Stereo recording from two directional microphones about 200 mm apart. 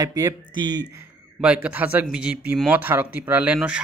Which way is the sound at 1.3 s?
5° right (ahead or behind).